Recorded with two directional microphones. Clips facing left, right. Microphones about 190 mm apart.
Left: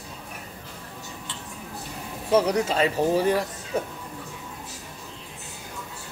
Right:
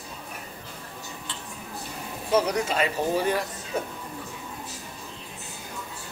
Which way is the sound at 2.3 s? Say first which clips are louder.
Left 3 dB; 30° left (ahead or behind).